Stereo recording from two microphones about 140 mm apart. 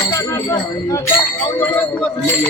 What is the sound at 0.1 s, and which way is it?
Speech, 25° left (ahead or behind).